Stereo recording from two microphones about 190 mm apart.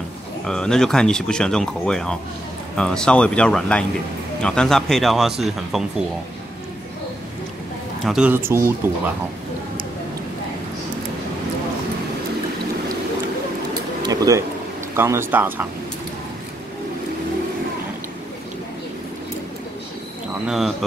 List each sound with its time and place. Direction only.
0.5 s speech: 5° left (ahead or behind)
8.0 s speech: 5° right (ahead or behind)
14.0 s a sound: 20° right (ahead or behind)
15.0 s speech: 10° right (ahead or behind)
20.4 s speech: centre (ahead or behind)